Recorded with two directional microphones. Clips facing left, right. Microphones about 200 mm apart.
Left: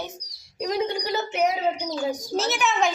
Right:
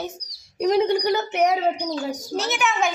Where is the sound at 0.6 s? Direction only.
65° right (ahead or behind).